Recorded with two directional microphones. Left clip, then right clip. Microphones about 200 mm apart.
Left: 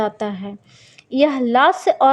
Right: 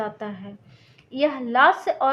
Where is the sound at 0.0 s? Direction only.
45° left (ahead or behind).